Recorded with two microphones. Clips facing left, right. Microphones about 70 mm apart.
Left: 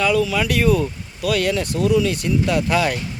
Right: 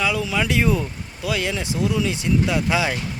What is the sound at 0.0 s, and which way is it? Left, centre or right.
Speech, centre.